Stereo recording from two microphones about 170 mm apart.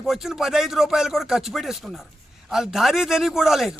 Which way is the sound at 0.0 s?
Centre (ahead or behind).